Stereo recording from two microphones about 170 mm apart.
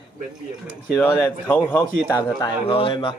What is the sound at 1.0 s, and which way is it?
Speech, 5° left (ahead or behind).